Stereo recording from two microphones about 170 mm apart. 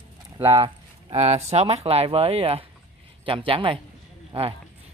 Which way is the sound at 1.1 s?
40° right (ahead or behind).